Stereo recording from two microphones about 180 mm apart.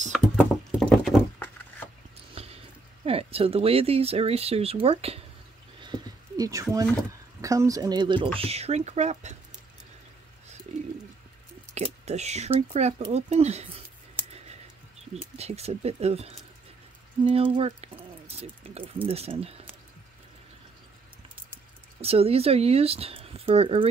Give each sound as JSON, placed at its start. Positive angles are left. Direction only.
{"t": 0.7, "sound": "rowboat", "side_deg": 5}
{"t": 2.4, "sound": "squish", "side_deg": -35}
{"t": 3.1, "sound": "speech", "side_deg": -30}
{"t": 5.8, "sound": "a sound", "side_deg": -25}
{"t": 7.4, "sound": "speech", "side_deg": -20}
{"t": 11.7, "sound": "speech", "side_deg": -35}
{"t": 15.3, "sound": "speech", "side_deg": -35}
{"t": 22.0, "sound": "speech", "side_deg": -35}